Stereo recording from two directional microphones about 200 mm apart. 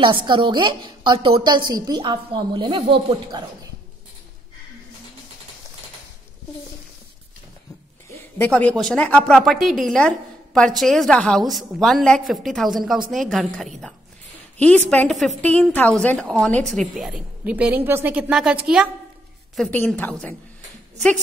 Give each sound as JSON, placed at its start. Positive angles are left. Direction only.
{"t": 0.0, "sound": "a woman's voice", "side_deg": -25}
{"t": 8.4, "sound": "a woman's voice", "side_deg": 5}